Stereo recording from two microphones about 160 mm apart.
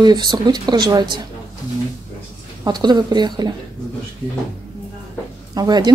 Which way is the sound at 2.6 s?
25° right (ahead or behind).